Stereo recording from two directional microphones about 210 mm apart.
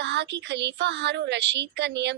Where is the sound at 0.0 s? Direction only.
55° right (ahead or behind).